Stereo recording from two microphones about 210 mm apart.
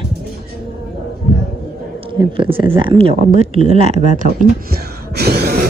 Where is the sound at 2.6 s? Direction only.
25° right (ahead or behind).